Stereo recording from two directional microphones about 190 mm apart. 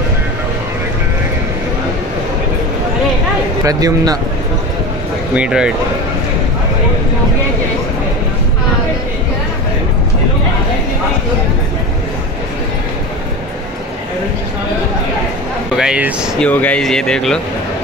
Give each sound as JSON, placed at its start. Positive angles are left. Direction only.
{"t": 3.6, "sound": "speech", "side_deg": -20}
{"t": 5.3, "sound": "speech", "side_deg": -5}
{"t": 15.7, "sound": "speech", "side_deg": -5}
{"t": 16.4, "sound": "speech", "side_deg": 10}